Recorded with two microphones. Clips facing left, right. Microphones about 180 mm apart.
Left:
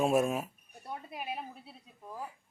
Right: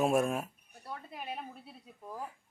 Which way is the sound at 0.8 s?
15° left (ahead or behind).